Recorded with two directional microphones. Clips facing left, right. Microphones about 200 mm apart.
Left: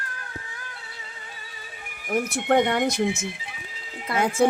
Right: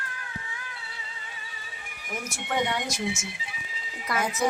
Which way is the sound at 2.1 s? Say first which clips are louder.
Left 10 dB; 60° left (ahead or behind).